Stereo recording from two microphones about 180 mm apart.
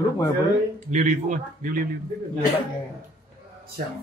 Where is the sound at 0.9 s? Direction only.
45° right (ahead or behind).